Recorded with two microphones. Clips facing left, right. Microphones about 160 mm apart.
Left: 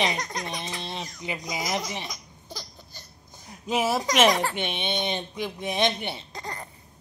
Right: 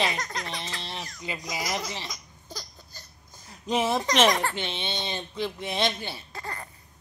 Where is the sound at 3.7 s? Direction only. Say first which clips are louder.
Even; 5° left (ahead or behind).